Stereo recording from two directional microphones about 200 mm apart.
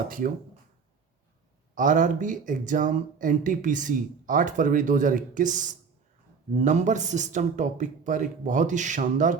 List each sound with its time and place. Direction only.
1.7 s speech: 40° right (ahead or behind)